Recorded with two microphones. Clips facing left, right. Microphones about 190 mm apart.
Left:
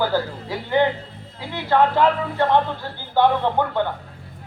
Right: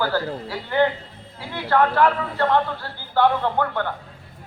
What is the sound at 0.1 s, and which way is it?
A woman's voice, 15° left (ahead or behind).